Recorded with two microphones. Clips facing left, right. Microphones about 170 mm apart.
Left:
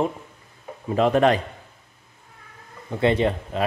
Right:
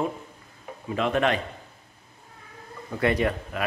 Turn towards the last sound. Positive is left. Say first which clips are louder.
# left 3 dB
turn(degrees=25)  # may be behind; listen again after turning